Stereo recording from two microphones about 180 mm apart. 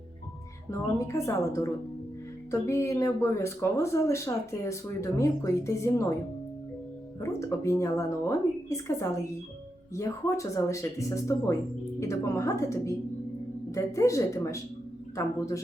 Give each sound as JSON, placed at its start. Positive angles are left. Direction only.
{"t": 0.7, "sound": "speech", "side_deg": 15}
{"t": 7.2, "sound": "speech", "side_deg": 15}